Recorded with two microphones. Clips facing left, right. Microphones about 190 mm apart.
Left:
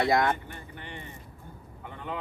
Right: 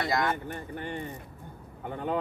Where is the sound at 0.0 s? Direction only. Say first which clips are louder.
Left 4 dB; 55° left (ahead or behind).